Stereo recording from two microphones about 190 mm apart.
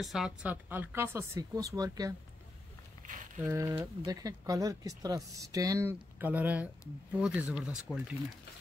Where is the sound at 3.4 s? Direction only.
15° right (ahead or behind).